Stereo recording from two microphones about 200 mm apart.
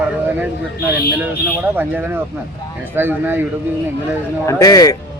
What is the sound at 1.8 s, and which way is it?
Speech, 10° right (ahead or behind).